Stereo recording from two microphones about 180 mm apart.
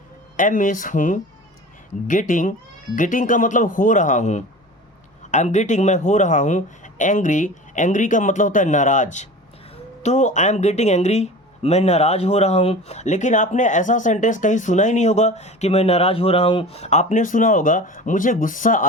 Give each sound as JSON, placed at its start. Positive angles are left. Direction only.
{"t": 0.3, "sound": "a man's voice", "side_deg": 45}